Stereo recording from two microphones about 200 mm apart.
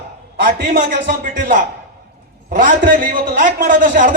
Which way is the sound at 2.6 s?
45° right (ahead or behind).